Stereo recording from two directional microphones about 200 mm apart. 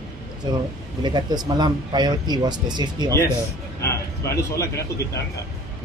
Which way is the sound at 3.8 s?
15° left (ahead or behind).